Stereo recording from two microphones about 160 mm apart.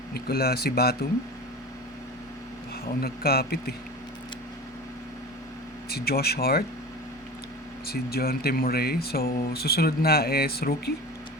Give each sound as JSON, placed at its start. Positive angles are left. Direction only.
{"t": 0.1, "sound": "speech", "side_deg": 75}
{"t": 2.8, "sound": "speech", "side_deg": 75}
{"t": 5.9, "sound": "speech", "side_deg": 75}
{"t": 7.9, "sound": "speech", "side_deg": 75}